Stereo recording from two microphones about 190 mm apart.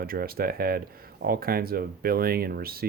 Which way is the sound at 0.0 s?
50° right (ahead or behind).